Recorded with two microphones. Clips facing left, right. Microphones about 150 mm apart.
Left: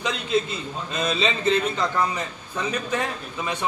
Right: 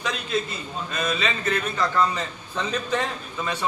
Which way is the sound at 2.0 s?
10° left (ahead or behind).